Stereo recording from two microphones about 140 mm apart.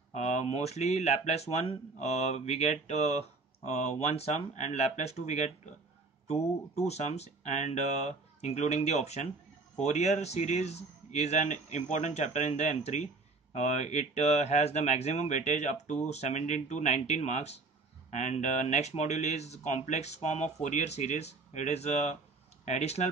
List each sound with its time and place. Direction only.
0.1 s a man's voice: 55° left (ahead or behind)